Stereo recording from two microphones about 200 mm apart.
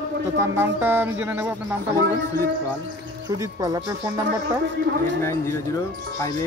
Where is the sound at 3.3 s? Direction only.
20° right (ahead or behind).